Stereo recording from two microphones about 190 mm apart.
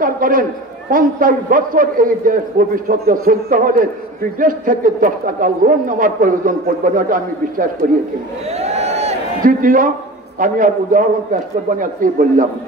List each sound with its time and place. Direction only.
0.0 s a man's voice: 45° right (ahead or behind)
8.5 s a sound: 35° right (ahead or behind)
10.4 s a man's voice: 45° right (ahead or behind)